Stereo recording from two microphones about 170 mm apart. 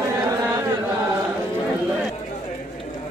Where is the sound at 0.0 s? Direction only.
15° right (ahead or behind).